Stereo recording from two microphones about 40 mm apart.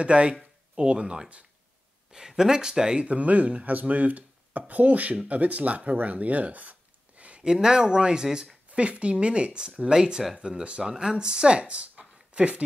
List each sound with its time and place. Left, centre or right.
0.0 s speech: right
3.0 s speech: right
5.9 s a sound: right
7.4 s speech: centre
8.7 s speech: right
10.8 s speech: centre; by 12.6 s right